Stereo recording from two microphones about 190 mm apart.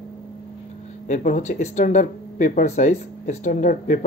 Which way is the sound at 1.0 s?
40° left (ahead or behind).